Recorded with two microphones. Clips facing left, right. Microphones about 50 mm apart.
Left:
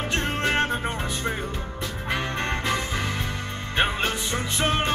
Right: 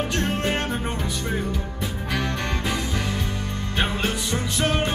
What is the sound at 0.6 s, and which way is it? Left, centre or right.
Music, left.